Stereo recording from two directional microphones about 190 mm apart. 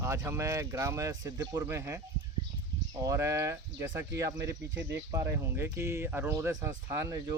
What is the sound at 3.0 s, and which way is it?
Speech, 15° right (ahead or behind).